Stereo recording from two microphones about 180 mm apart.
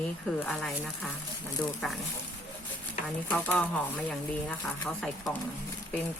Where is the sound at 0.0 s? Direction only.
5° left (ahead or behind).